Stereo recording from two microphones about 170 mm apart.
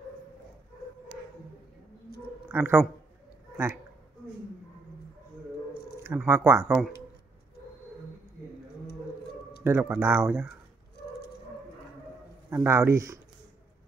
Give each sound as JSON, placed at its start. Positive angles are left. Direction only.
{"t": 2.1, "sound": "a sound", "side_deg": 65}
{"t": 2.4, "sound": "speech", "side_deg": -10}
{"t": 6.0, "sound": "speech", "side_deg": -15}
{"t": 9.6, "sound": "speech", "side_deg": -15}
{"t": 12.4, "sound": "speech", "side_deg": -15}